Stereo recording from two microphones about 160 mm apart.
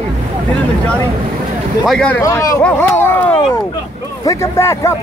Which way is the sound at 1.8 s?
5° left (ahead or behind).